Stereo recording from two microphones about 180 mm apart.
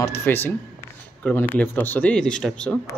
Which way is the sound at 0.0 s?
15° left (ahead or behind).